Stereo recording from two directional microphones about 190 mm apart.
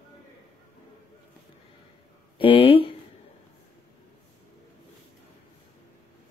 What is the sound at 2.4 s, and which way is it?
Speech, 30° left (ahead or behind).